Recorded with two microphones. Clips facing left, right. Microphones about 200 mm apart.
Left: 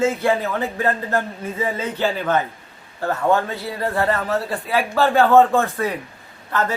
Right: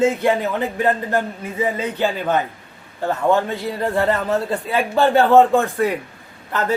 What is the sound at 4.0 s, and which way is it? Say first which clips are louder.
Speech: right 2 dB; 20° right (ahead or behind).